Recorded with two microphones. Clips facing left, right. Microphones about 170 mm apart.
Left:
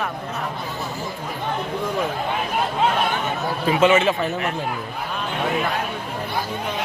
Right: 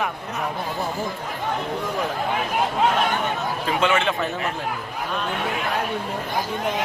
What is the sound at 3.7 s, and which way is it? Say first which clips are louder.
Speech: left 5 dB; 5° left (ahead or behind).